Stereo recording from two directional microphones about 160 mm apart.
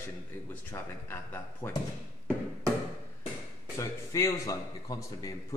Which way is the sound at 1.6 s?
10° left (ahead or behind).